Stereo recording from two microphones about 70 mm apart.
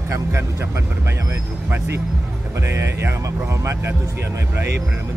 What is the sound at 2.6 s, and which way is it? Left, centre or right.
Speech, right.